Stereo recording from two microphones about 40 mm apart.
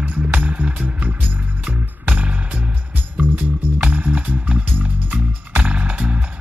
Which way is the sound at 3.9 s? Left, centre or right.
Right.